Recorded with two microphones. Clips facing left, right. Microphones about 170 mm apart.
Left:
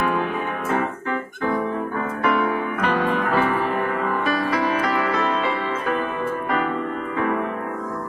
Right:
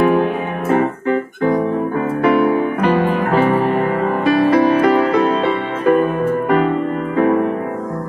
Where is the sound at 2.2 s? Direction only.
30° right (ahead or behind).